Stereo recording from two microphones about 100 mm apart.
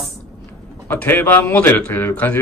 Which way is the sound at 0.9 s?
15° left (ahead or behind).